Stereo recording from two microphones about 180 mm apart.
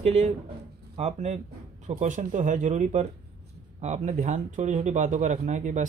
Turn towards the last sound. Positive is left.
turn(degrees=-40)  # may be behind; listen again after turning